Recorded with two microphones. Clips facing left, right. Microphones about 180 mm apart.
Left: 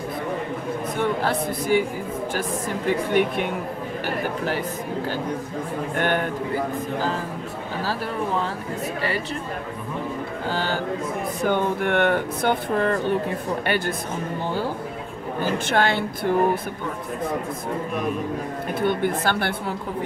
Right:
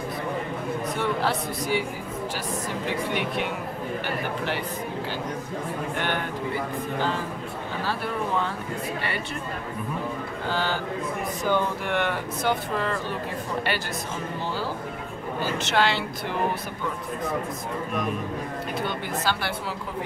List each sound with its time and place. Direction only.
0.9 s speech: 50° left (ahead or behind)
2.9 s speech: 50° left (ahead or behind)
5.9 s speech: 50° left (ahead or behind)
10.5 s speech: 45° left (ahead or behind)
11.4 s speech: 55° left (ahead or behind)
15.5 s speech: 50° left (ahead or behind)
18.8 s speech: 55° left (ahead or behind)